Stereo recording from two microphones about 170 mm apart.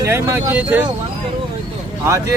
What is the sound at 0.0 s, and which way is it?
Speech, 15° right (ahead or behind).